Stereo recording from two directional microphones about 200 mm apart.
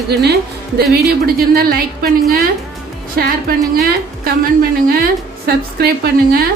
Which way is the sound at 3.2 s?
50° right (ahead or behind).